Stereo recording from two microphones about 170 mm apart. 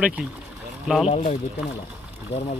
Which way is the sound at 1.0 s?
35° left (ahead or behind).